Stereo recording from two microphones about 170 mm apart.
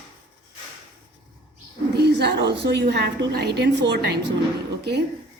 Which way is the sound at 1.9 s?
75° right (ahead or behind).